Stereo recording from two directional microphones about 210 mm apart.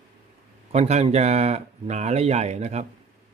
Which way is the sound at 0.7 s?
30° right (ahead or behind).